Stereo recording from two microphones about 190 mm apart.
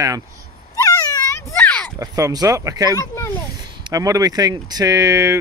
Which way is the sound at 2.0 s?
15° right (ahead or behind).